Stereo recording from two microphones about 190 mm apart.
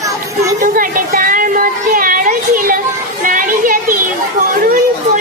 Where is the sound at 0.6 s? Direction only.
50° right (ahead or behind).